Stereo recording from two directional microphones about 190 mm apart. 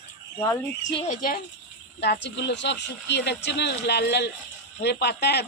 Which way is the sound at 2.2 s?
65° left (ahead or behind).